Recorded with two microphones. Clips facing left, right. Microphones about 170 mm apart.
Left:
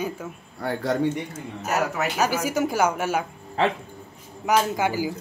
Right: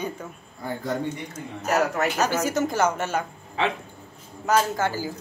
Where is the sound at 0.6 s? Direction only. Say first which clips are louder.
Left 4 dB; 75° left (ahead or behind).